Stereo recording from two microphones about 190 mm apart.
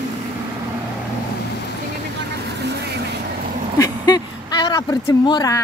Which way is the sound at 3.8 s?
20° left (ahead or behind).